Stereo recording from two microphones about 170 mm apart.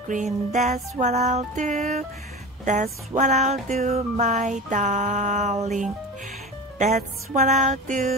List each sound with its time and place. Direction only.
0.1 s music: 45° right (ahead or behind)
7.0 s music: 45° right (ahead or behind)